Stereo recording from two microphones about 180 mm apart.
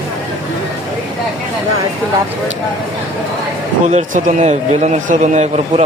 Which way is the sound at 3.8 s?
40° right (ahead or behind).